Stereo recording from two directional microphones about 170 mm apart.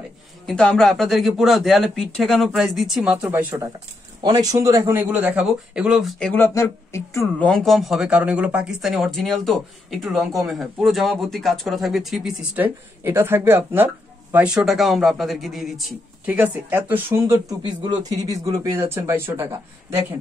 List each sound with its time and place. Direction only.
0.5 s a man's voice: 5° left (ahead or behind); by 3.6 s 10° right (ahead or behind)
4.2 s a man's voice: 20° right (ahead or behind); by 16.0 s centre (ahead or behind)
16.3 s speech: 10° right (ahead or behind)